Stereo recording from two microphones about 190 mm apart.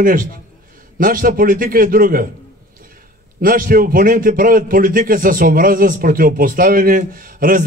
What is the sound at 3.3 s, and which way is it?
A man's voice, 50° right (ahead or behind).